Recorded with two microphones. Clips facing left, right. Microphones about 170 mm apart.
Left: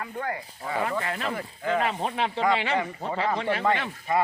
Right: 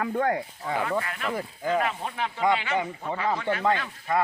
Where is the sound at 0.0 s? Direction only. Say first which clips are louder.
Right 7 dB; 70° right (ahead or behind).